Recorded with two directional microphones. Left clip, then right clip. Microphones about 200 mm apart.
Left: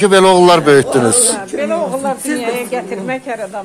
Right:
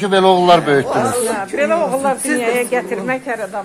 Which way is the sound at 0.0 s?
60° left (ahead or behind).